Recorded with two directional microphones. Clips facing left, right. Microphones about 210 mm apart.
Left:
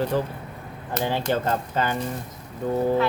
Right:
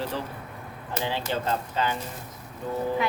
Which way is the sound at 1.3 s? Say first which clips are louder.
Left 4 dB; 50° left (ahead or behind).